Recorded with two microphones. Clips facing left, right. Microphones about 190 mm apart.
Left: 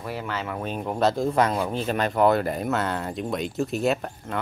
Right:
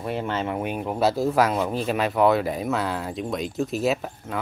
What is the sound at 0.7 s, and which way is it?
Speech, 5° right (ahead or behind).